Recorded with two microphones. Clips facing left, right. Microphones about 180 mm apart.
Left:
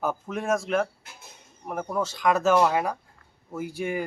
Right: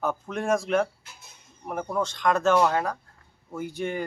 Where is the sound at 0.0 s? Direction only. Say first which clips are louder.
Even; 5° left (ahead or behind).